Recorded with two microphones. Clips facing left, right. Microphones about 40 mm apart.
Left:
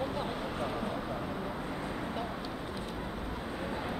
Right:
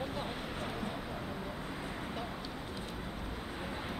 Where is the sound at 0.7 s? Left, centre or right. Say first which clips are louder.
Left 4 dB; centre.